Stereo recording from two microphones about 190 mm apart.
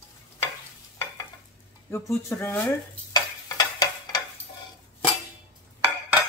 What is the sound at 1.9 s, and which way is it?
Speech, 15° left (ahead or behind).